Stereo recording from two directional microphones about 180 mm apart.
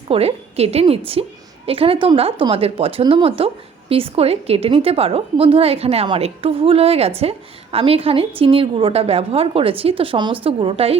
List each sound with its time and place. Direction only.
0.1 s a woman's voice: 35° right (ahead or behind)